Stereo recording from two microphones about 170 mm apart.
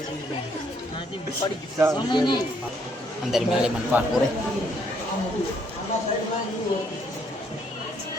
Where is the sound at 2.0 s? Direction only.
25° left (ahead or behind).